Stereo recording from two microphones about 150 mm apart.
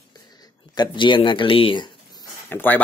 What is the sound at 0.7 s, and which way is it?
Speech, 30° left (ahead or behind).